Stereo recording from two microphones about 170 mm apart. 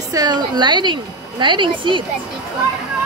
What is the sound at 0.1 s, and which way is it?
A woman's voice, 25° right (ahead or behind).